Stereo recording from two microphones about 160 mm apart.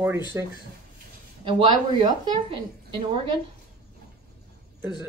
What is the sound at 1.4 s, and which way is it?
Speech, 30° right (ahead or behind).